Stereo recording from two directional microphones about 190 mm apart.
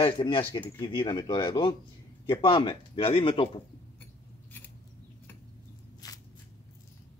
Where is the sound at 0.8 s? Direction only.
25° left (ahead or behind).